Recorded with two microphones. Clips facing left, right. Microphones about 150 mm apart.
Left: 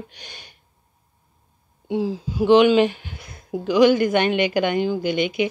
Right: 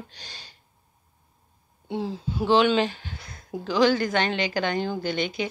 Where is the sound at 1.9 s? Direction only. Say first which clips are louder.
Left 5 dB; 10° left (ahead or behind).